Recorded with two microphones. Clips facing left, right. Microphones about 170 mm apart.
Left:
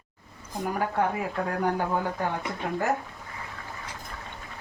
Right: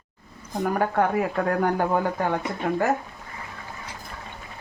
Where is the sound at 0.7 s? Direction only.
60° right (ahead or behind).